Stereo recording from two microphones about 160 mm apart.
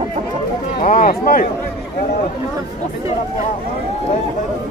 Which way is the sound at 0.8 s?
55° left (ahead or behind).